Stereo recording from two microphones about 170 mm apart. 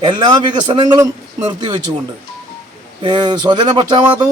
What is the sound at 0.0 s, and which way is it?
Speech, 25° right (ahead or behind).